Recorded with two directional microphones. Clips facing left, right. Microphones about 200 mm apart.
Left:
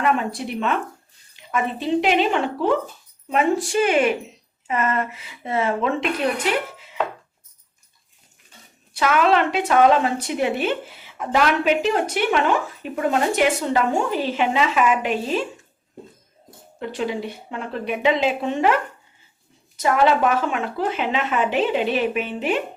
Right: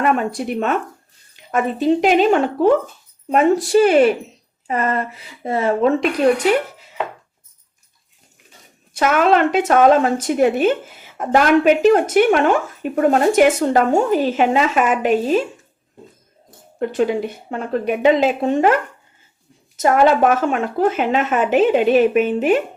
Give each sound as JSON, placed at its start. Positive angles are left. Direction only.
{"t": 0.3, "sound": "a woman's voice", "side_deg": -45}
{"t": 9.0, "sound": "a woman's voice", "side_deg": -45}
{"t": 16.8, "sound": "a woman's voice", "side_deg": -50}
{"t": 19.8, "sound": "a woman's voice", "side_deg": -45}